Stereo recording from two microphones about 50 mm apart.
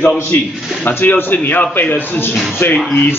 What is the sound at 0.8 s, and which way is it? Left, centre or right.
A man's voice, left.